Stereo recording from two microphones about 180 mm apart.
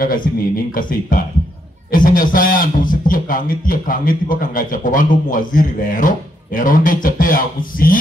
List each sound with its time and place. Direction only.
1.1 s a man's voice: 50° left (ahead or behind)